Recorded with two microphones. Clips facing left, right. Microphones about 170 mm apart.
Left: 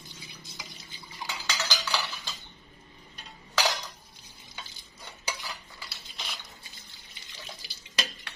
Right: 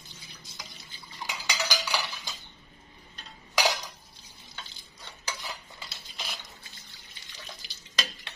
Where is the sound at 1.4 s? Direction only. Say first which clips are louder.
Right 2 dB; 15° right (ahead or behind).